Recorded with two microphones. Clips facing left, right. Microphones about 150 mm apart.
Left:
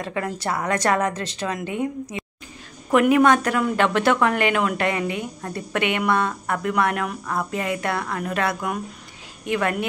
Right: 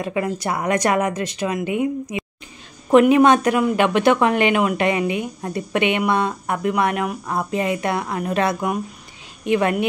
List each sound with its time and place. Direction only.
0.0 s speech: 10° right (ahead or behind)
2.9 s speech: 25° right (ahead or behind)